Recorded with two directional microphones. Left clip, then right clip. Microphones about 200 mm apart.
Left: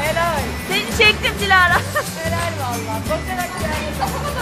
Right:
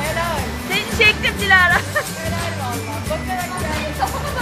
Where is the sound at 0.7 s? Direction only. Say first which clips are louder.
Even; 15° left (ahead or behind).